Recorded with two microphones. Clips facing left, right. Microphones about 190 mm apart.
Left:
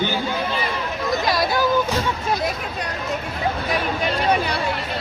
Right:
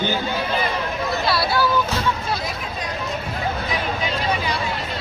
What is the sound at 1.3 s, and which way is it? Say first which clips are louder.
Vehicle: even; 15° left (ahead or behind).